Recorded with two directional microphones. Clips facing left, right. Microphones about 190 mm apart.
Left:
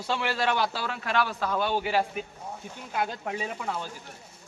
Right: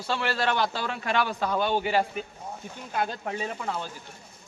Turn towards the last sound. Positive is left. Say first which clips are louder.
# right 1 dB
turn(degrees=5)  # may be behind; listen again after turning